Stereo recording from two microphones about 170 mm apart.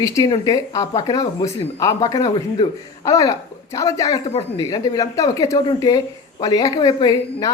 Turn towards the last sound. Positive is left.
turn(degrees=25)  # may be behind; listen again after turning